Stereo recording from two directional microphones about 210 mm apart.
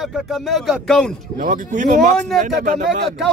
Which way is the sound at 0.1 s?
Centre (ahead or behind).